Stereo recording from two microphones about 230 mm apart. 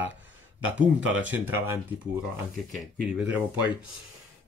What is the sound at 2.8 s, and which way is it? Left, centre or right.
Speech, centre.